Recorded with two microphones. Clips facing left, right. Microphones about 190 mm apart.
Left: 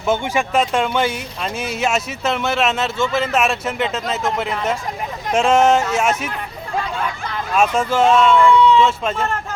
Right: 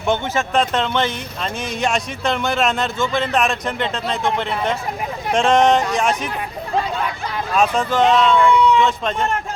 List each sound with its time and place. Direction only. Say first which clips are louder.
0.0 s speech: left 1 dB; 5° left (ahead or behind)
7.5 s speech: left 1 dB; 10° left (ahead or behind)
8.4 s speech: left 2 dB; 15° right (ahead or behind)